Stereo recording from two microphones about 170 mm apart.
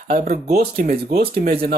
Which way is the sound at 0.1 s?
55° right (ahead or behind).